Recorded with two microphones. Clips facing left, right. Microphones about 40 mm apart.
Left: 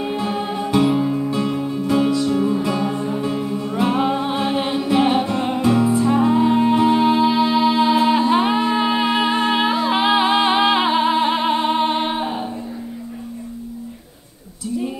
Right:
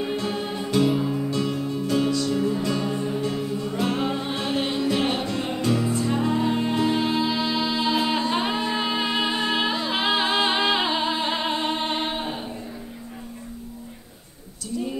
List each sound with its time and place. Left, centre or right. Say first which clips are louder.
0.0 s music: left 4 dB; centre